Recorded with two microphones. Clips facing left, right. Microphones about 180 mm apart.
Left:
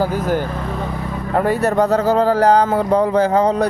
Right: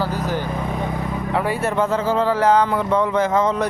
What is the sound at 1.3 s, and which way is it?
A man's voice, 45° left (ahead or behind).